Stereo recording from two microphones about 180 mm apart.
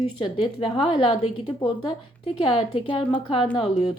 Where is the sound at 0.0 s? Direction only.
25° left (ahead or behind).